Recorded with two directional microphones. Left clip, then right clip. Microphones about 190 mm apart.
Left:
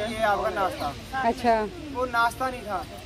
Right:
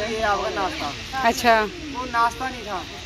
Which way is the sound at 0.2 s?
20° left (ahead or behind).